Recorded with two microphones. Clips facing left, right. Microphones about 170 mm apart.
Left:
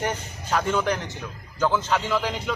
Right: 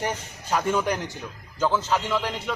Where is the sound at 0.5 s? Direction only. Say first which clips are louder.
Even; 10° right (ahead or behind).